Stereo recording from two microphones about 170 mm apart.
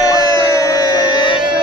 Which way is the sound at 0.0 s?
20° left (ahead or behind).